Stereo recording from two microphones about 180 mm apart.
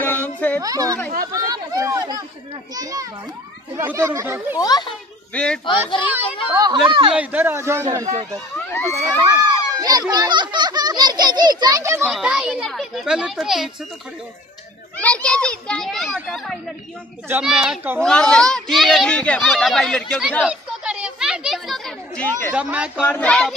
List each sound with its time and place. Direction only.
0.0 s a sound: 10° left (ahead or behind)
0.6 s speech: 20° right (ahead or behind)
4.6 s a child's voice: 20° left (ahead or behind)
5.3 s a child's voice: 5° left (ahead or behind)
6.5 s speech: 25° right (ahead or behind)
7.2 s a child's voice: 10° right (ahead or behind)
12.0 s a child's voice: 5° right (ahead or behind)
15.0 s children playing: 10° left (ahead or behind)
16.3 s a child's voice: centre (ahead or behind)
18.0 s a child's voice: 5° left (ahead or behind)
20.4 s children playing: 5° right (ahead or behind)
22.6 s speech: 5° right (ahead or behind)
23.0 s a sound: 10° left (ahead or behind)